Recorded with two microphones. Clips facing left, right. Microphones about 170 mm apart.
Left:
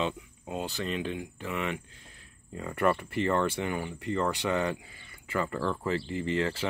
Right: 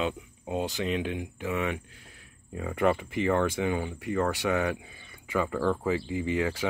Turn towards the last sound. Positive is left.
turn(degrees=-10)  # may be behind; listen again after turning